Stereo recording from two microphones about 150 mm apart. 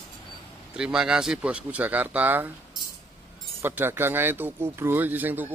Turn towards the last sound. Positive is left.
turn(degrees=-10)  # may be behind; listen again after turning